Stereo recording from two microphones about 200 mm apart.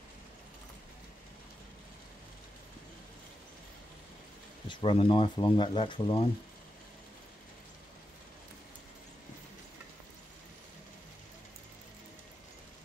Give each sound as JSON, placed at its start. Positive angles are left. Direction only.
{"t": 4.6, "sound": "speech", "side_deg": 25}